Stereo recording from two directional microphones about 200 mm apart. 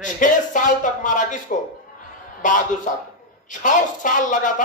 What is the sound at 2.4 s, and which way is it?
Speech, 40° left (ahead or behind).